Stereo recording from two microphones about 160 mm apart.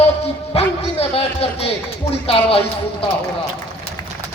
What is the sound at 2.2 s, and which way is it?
Speech, 35° left (ahead or behind).